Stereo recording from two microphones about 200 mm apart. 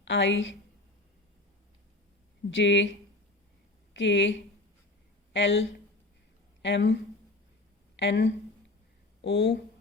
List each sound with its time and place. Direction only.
0.0 s a woman's voice: 65° left (ahead or behind)
2.5 s speech: 65° left (ahead or behind)
3.9 s a woman's voice: 65° left (ahead or behind)
7.9 s speech: 60° left (ahead or behind)